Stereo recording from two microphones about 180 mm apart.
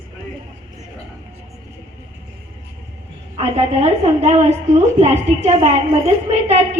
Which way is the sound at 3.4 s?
35° right (ahead or behind).